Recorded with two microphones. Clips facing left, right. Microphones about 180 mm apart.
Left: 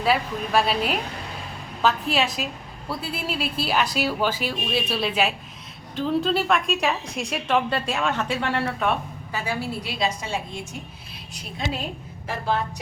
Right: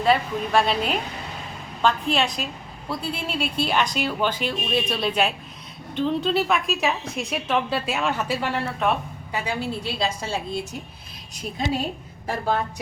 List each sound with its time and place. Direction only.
0.0 s a woman's voice: 5° left (ahead or behind)
9.3 s a woman's voice: 20° right (ahead or behind)